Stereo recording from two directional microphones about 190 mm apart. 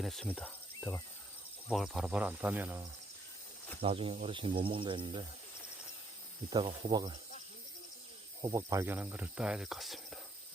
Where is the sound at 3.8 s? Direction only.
30° right (ahead or behind).